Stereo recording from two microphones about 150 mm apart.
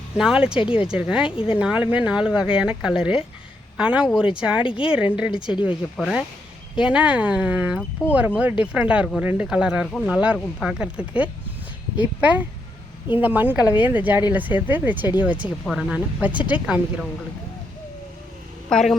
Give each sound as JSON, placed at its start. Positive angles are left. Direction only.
{"t": 0.2, "sound": "speech", "side_deg": -5}
{"t": 0.6, "sound": "speech", "side_deg": 35}
{"t": 0.9, "sound": "speech", "side_deg": -5}
{"t": 4.6, "sound": "speech", "side_deg": 35}
{"t": 4.9, "sound": "speech", "side_deg": -5}
{"t": 7.8, "sound": "speech", "side_deg": 10}
{"t": 8.4, "sound": "speech", "side_deg": -10}
{"t": 18.7, "sound": "speech", "side_deg": 5}